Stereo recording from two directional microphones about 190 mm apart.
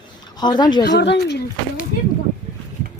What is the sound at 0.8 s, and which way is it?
Speech, 65° left (ahead or behind).